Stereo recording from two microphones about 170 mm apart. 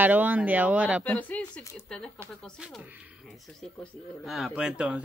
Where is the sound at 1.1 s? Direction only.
10° left (ahead or behind).